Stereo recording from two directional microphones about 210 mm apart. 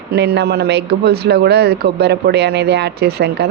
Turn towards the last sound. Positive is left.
turn(degrees=-50)  # may be behind; listen again after turning